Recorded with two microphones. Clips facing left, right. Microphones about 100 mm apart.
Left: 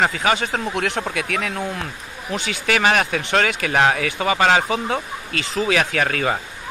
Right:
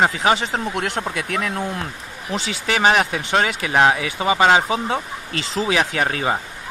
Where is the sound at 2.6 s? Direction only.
25° right (ahead or behind).